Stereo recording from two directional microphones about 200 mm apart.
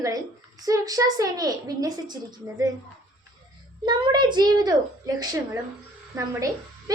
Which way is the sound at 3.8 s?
20° right (ahead or behind).